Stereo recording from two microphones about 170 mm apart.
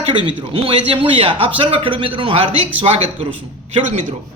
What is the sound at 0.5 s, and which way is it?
Speech, 30° right (ahead or behind).